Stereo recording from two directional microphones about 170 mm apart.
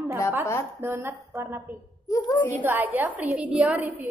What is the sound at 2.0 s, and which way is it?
Speech, 20° left (ahead or behind).